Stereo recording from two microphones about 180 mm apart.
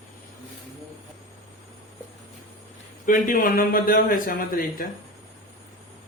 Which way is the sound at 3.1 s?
50° left (ahead or behind).